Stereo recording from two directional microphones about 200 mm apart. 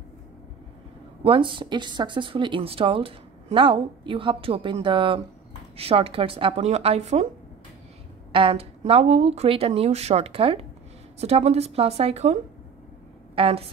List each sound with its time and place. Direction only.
1.2 s speech: 25° right (ahead or behind)
8.3 s a woman's voice: 25° right (ahead or behind)